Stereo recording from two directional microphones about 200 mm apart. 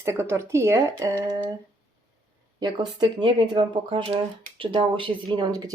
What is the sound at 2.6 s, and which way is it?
Speech, 20° right (ahead or behind).